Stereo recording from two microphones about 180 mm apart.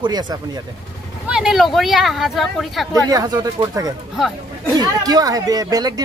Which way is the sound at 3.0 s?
20° right (ahead or behind).